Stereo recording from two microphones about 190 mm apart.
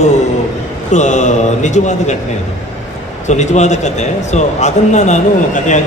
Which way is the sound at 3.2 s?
40° left (ahead or behind).